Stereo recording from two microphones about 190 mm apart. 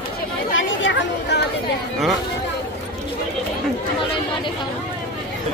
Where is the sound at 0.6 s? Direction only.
75° left (ahead or behind).